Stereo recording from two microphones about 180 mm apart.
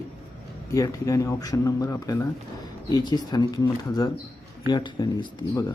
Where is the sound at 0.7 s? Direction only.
15° left (ahead or behind).